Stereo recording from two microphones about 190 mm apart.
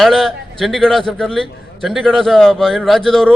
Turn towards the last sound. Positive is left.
turn(degrees=0)  # may be behind; listen again after turning